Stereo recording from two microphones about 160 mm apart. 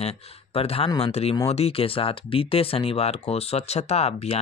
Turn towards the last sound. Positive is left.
turn(degrees=40)  # may be behind; listen again after turning